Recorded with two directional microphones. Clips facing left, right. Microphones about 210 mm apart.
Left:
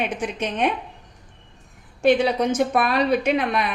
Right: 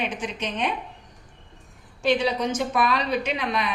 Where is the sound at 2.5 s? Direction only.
55° left (ahead or behind).